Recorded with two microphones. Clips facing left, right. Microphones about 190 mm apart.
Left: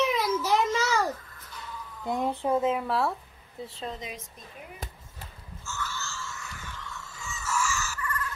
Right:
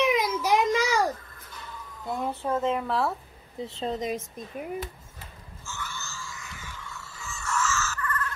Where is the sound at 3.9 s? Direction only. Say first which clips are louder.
Right 8 dB; 45° right (ahead or behind).